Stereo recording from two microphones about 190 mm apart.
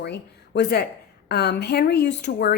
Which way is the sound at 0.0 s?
60° left (ahead or behind).